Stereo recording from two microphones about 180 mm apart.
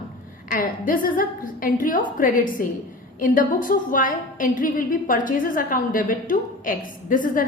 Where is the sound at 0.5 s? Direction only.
50° left (ahead or behind).